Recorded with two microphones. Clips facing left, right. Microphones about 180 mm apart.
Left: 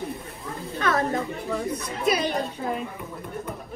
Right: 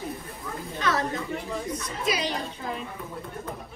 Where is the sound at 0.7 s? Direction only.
50° left (ahead or behind).